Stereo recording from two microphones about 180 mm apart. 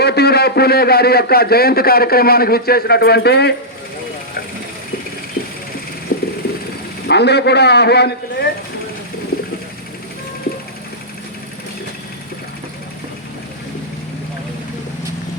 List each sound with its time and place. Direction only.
0.0 s a man's voice: 65° left (ahead or behind)
6.1 s clip-clop: 50° left (ahead or behind)
7.1 s a man's voice: 70° left (ahead or behind)